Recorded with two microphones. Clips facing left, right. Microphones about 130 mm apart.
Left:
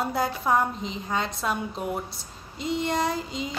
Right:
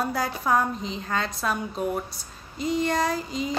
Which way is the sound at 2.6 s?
20° left (ahead or behind).